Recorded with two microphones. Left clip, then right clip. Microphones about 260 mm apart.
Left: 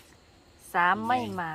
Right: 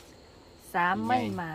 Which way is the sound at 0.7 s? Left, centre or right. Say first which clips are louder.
Left 2 dB; centre.